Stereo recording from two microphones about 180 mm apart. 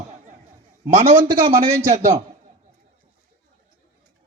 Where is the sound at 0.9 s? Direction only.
40° right (ahead or behind).